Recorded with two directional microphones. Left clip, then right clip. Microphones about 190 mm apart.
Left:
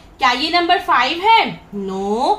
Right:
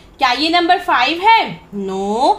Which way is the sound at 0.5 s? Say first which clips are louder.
Right 2 dB; 45° right (ahead or behind).